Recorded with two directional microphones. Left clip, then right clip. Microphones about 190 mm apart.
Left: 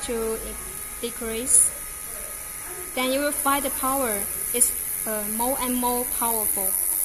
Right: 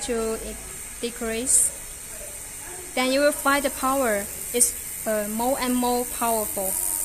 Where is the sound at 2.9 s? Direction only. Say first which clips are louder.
Right 4 dB; 30° right (ahead or behind).